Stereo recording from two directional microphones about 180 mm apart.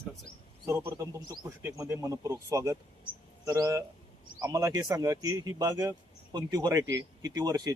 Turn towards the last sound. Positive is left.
turn(degrees=-20)  # may be behind; listen again after turning